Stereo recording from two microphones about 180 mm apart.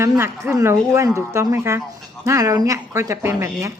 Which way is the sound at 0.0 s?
15° right (ahead or behind).